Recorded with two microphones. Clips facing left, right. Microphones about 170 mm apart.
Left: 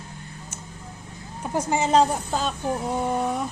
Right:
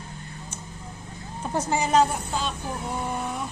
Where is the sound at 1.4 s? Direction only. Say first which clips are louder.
Left 2 dB; 10° left (ahead or behind); by 2.5 s 40° left (ahead or behind).